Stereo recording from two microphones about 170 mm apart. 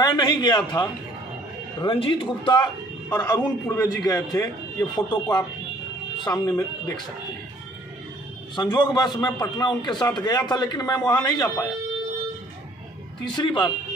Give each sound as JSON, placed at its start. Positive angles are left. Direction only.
{"t": 0.0, "sound": "a man's voice", "side_deg": 25}
{"t": 8.5, "sound": "a man's voice", "side_deg": 25}
{"t": 13.4, "sound": "a man's voice", "side_deg": 25}